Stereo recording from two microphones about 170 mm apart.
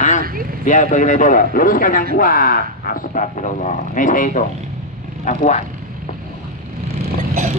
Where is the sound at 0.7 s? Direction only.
45° left (ahead or behind).